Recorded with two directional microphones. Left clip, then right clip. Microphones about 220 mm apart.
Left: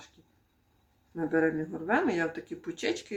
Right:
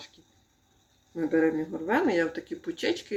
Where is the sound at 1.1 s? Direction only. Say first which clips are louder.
Right 2 dB; 15° left (ahead or behind).